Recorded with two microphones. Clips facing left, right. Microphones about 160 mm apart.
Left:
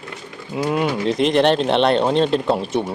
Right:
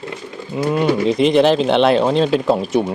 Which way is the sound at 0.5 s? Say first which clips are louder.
Right 3 dB; 5° left (ahead or behind).